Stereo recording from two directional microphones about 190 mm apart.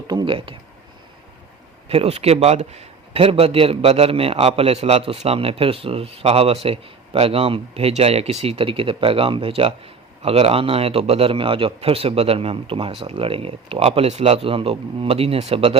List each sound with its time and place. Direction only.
0.1 s speech: 25° right (ahead or behind)
1.9 s a man's voice: 30° right (ahead or behind)